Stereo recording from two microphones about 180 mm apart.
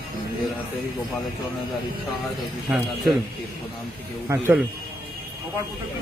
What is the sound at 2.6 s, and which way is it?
Speech, 5° right (ahead or behind).